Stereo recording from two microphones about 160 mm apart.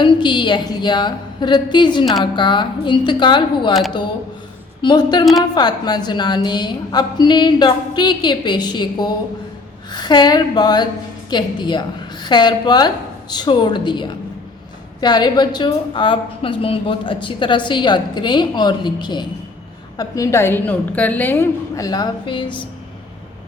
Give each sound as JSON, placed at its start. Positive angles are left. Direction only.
{"t": 0.0, "sound": "a woman's voice", "side_deg": 30}
{"t": 4.8, "sound": "a woman's voice", "side_deg": 25}